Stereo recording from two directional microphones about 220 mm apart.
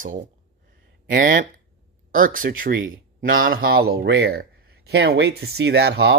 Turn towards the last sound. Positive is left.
turn(degrees=-50)  # may be behind; listen again after turning